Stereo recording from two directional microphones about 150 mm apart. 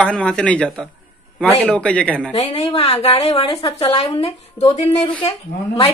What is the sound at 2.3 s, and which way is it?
Speech, 40° left (ahead or behind).